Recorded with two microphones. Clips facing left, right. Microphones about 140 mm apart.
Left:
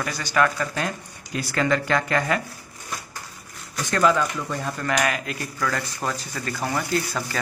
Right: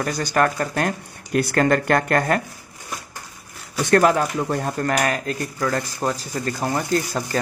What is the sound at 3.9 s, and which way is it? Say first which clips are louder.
Speech: right 4 dB; 55° right (ahead or behind).